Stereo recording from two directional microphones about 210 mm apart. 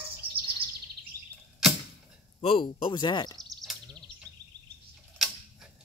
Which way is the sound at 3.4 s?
Centre (ahead or behind).